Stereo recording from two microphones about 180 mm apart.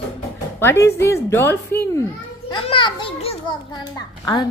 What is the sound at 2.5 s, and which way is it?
A child's voice, 30° left (ahead or behind).